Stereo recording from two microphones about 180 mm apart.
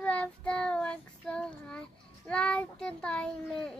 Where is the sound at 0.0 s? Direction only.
5° left (ahead or behind).